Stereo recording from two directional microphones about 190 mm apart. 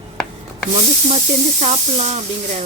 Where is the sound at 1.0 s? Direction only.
35° right (ahead or behind).